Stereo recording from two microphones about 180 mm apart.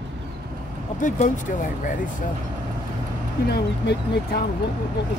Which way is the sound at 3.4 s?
65° left (ahead or behind).